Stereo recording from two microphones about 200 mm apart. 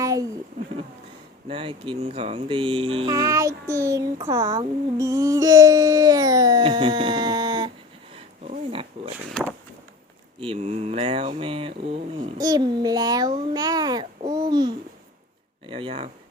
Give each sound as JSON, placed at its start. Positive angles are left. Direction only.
{"t": 0.0, "sound": "a sound", "side_deg": -15}
{"t": 1.5, "sound": "speech", "side_deg": -25}
{"t": 8.1, "sound": "dog", "side_deg": -30}
{"t": 10.4, "sound": "speech", "side_deg": -30}
{"t": 13.5, "sound": "babbling", "side_deg": -20}
{"t": 15.6, "sound": "speech", "side_deg": -25}